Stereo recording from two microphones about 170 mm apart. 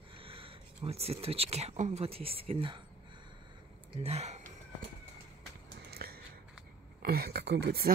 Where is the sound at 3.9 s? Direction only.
35° right (ahead or behind).